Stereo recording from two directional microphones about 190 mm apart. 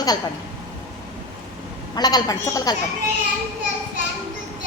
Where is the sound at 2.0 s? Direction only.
20° left (ahead or behind).